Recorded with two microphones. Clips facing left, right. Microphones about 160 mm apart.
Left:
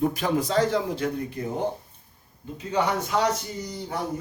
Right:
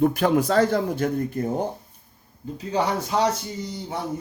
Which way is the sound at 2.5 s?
35° right (ahead or behind).